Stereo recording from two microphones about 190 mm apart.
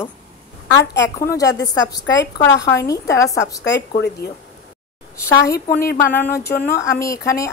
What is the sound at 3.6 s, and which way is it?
A woman's voice, 65° left (ahead or behind).